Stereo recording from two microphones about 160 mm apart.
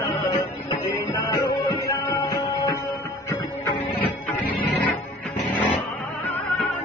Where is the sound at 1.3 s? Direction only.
20° left (ahead or behind).